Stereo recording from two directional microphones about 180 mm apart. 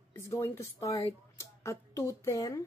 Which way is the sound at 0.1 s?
15° left (ahead or behind).